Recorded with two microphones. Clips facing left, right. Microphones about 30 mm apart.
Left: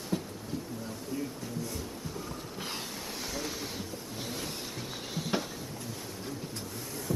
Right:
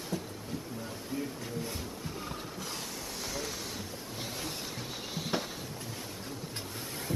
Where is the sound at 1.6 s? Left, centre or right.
Right.